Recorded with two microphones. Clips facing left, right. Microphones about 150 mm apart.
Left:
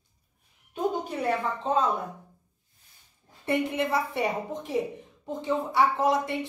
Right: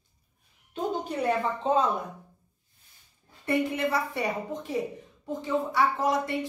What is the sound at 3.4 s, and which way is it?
A woman's voice, 20° left (ahead or behind).